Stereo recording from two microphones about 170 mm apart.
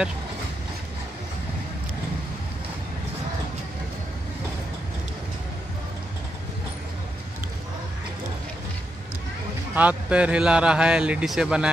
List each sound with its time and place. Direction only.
9.8 s speech: 10° right (ahead or behind)